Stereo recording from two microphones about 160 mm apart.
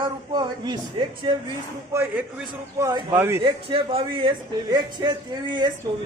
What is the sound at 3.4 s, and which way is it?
A man's voice, 35° right (ahead or behind).